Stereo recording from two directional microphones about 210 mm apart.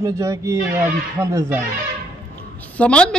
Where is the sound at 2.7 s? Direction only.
5° left (ahead or behind).